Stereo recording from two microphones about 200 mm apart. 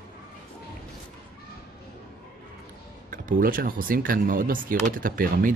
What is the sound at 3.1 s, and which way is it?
Speech, 45° right (ahead or behind).